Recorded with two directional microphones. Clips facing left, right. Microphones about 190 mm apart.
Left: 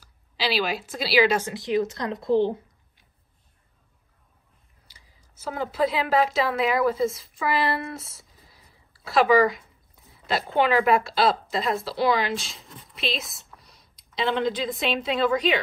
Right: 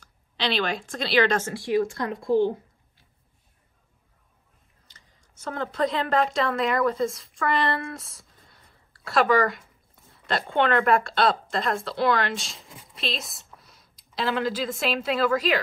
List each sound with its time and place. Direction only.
0.0 s a woman's voice: 5° left (ahead or behind)
1.5 s a woman's voice: 20° left (ahead or behind)
4.8 s speech: 5° left (ahead or behind)